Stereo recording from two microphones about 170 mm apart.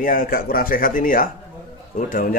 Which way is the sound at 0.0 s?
55° left (ahead or behind).